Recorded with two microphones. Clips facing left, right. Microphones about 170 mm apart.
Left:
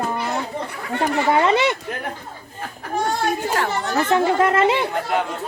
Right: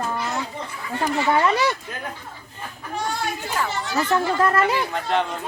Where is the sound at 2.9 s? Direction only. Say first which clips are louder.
Left 6 dB; 50° left (ahead or behind).